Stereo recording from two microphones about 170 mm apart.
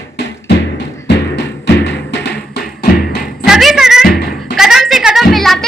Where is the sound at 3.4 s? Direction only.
Centre (ahead or behind).